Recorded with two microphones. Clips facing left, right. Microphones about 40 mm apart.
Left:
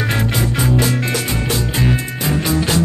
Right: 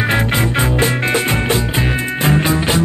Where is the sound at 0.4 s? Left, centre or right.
Right.